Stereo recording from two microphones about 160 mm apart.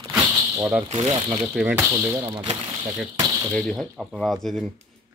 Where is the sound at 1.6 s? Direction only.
10° right (ahead or behind).